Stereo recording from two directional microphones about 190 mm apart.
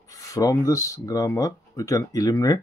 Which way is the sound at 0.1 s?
15° left (ahead or behind).